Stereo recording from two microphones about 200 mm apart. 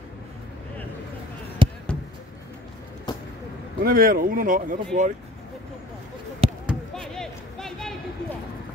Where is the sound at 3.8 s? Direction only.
45° right (ahead or behind).